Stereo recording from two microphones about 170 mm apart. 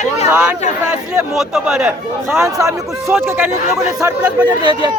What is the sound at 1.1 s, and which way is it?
Speech, 5° right (ahead or behind).